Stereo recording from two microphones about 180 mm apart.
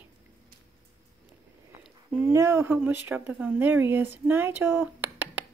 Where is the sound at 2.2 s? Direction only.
15° right (ahead or behind).